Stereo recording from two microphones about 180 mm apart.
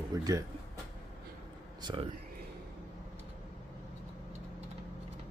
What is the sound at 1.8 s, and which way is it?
Speech, 25° right (ahead or behind).